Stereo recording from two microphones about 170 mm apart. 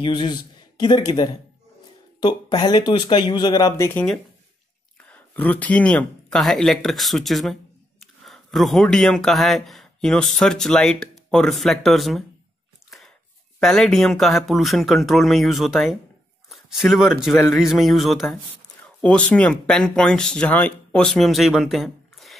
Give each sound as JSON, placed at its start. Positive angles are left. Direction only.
{"t": 0.0, "sound": "speech", "side_deg": 25}
{"t": 5.1, "sound": "speech", "side_deg": 10}
{"t": 13.6, "sound": "speech", "side_deg": 5}